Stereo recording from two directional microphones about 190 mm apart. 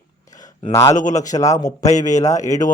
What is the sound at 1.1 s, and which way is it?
Speech, 40° left (ahead or behind).